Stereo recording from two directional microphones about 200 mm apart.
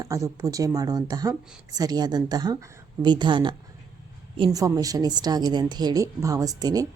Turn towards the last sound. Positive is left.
turn(degrees=-20)  # may be behind; listen again after turning